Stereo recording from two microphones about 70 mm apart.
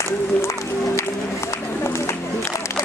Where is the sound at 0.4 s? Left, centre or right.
Left.